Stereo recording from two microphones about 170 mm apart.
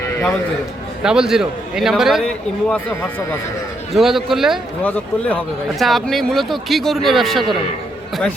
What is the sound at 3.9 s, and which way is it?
Speech, centre (ahead or behind).